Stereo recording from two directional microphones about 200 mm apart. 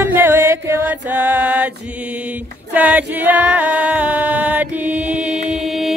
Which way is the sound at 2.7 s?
10° right (ahead or behind).